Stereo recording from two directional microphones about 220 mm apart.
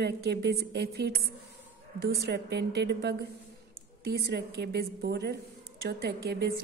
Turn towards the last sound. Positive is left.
turn(degrees=-45)  # may be behind; listen again after turning